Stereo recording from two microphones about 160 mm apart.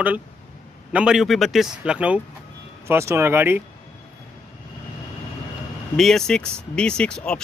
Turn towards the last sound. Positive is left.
turn(degrees=5)  # may be behind; listen again after turning